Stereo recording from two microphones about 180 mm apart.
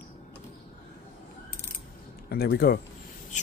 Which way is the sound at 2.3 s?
60° left (ahead or behind).